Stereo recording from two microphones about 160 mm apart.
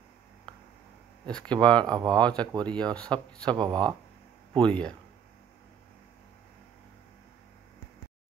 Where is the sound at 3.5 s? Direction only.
25° right (ahead or behind).